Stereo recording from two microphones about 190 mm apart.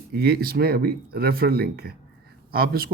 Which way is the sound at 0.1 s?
55° right (ahead or behind).